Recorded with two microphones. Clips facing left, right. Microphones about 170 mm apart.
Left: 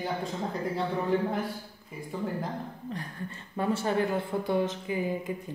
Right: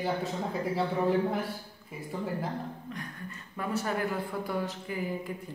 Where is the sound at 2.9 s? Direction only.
30° left (ahead or behind).